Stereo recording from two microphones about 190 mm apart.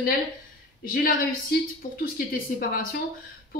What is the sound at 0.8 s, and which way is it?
Speech, 50° left (ahead or behind).